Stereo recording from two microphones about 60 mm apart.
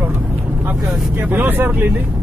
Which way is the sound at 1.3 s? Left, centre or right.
Right.